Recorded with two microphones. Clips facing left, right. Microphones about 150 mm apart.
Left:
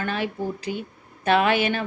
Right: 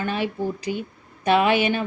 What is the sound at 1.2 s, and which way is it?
Speech, 15° right (ahead or behind).